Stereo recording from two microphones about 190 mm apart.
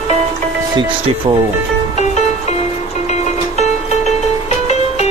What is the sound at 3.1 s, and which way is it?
Music, 35° left (ahead or behind).